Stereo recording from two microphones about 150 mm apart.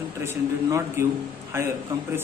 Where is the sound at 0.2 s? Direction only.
20° right (ahead or behind).